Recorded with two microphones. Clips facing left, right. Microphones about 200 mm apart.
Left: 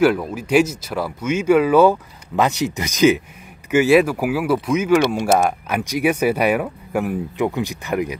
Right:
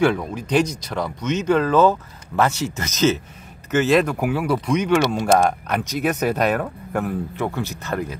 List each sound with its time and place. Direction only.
0.0 s speech: 5° left (ahead or behind)